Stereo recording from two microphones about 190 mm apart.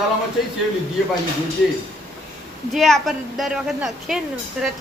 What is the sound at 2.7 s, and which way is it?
Speech, centre (ahead or behind).